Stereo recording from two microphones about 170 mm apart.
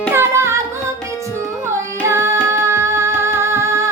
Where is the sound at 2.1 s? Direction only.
15° right (ahead or behind).